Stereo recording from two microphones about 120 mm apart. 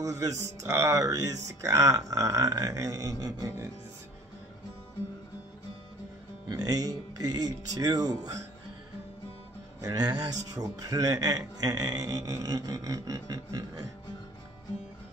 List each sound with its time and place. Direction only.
0.0 s speech: 30° right (ahead or behind)
6.5 s speech: 30° right (ahead or behind)
9.8 s speech: 30° right (ahead or behind)